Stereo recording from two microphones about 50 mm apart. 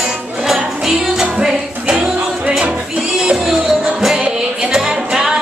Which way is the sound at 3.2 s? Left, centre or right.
Centre.